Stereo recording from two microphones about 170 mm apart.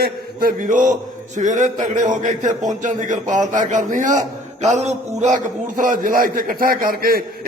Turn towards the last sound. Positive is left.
turn(degrees=-60)  # may be behind; listen again after turning